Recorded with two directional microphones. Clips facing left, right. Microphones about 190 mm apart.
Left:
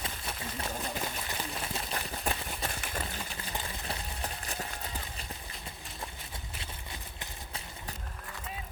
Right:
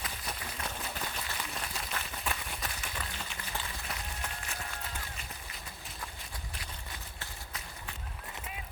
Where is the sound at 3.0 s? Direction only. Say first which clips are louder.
Left 3 dB; 30° left (ahead or behind).